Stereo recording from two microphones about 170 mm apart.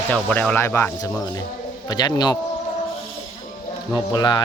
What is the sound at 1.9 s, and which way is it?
Speech, 25° left (ahead or behind).